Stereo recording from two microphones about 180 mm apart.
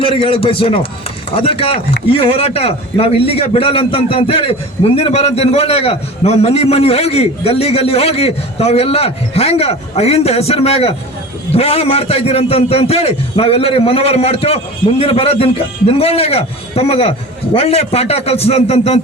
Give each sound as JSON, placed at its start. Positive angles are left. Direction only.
{"t": 0.0, "sound": "a man's voice", "side_deg": 30}